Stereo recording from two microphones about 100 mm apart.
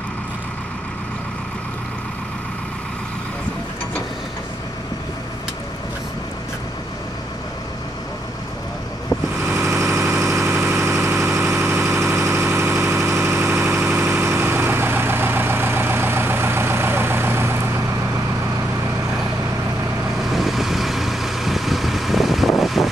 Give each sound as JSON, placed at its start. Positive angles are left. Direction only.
{"t": 9.5, "sound": "vehicle", "side_deg": -25}
{"t": 10.1, "sound": "engine", "side_deg": -30}
{"t": 20.2, "sound": "vehicle", "side_deg": 0}